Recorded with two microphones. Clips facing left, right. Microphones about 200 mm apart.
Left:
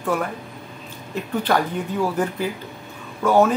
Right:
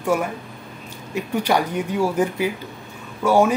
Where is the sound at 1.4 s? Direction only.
10° right (ahead or behind).